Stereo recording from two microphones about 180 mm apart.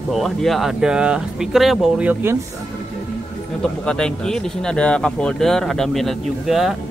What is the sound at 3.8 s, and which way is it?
Speech, 5° left (ahead or behind).